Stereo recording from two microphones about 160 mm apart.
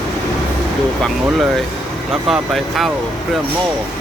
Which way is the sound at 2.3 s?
Centre (ahead or behind).